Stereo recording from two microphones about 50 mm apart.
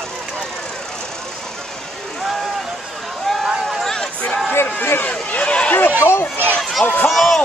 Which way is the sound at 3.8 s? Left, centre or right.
Centre.